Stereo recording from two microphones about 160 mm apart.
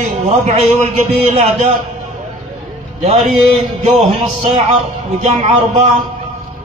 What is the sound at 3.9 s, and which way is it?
A man's voice, 40° right (ahead or behind).